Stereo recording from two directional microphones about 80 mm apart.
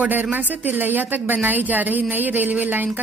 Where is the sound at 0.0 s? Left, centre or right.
Right.